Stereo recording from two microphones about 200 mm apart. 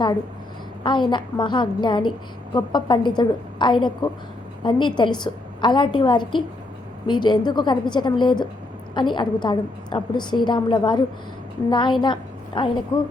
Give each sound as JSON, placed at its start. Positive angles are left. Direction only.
{"t": 0.9, "sound": "a woman's voice", "side_deg": 25}